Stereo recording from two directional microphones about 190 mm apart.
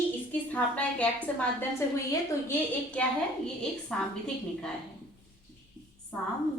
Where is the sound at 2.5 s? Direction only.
5° left (ahead or behind).